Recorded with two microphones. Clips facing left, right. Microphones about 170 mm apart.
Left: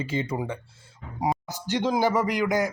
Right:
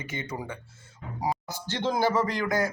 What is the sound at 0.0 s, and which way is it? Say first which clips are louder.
Speech: left 7 dB; 30° left (ahead or behind).